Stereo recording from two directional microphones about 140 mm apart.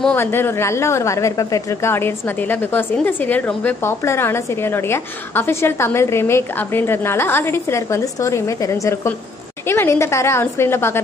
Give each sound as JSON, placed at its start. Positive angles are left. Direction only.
{"t": 0.0, "sound": "a woman's voice", "side_deg": 15}